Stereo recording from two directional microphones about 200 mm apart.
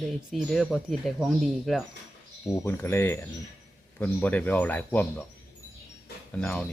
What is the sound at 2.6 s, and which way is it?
Speech, 10° left (ahead or behind).